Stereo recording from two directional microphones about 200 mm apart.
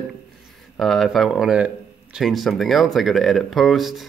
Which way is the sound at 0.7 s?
Centre (ahead or behind).